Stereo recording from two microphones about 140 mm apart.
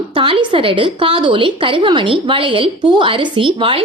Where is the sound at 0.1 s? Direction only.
40° right (ahead or behind).